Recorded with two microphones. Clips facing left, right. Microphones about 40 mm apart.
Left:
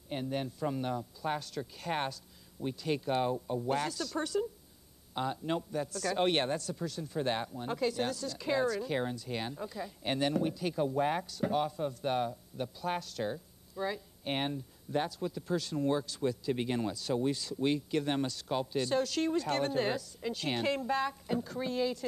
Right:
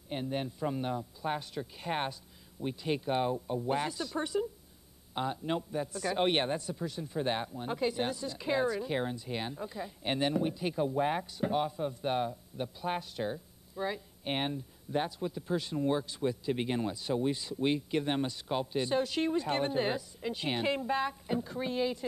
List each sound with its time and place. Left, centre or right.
0.1 s speech: centre
3.2 s speech: centre
10.8 s speech: centre
11.2 s speech: centre
12.8 s speech: centre